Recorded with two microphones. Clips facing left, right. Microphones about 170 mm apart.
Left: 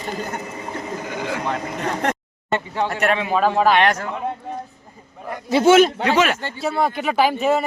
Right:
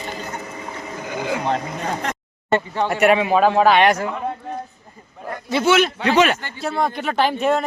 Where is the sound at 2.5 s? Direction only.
10° left (ahead or behind).